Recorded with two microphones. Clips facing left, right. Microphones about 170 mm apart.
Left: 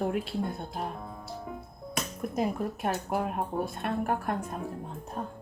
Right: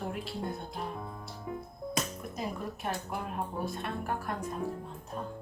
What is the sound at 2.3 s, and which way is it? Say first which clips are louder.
Speech: left 8 dB; 55° left (ahead or behind).